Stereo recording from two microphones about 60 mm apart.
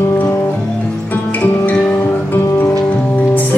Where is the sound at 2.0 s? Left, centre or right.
Left.